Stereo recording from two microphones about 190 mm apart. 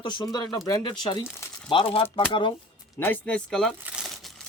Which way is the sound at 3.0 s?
10° left (ahead or behind).